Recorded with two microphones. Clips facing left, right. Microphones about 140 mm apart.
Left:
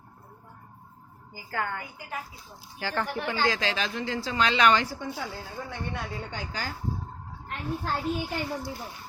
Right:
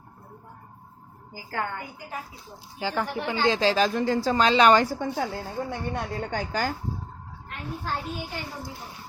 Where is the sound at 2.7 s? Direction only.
15° right (ahead or behind); by 6.7 s 50° right (ahead or behind).